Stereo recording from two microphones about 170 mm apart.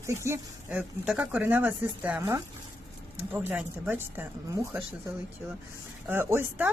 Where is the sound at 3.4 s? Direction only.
10° right (ahead or behind).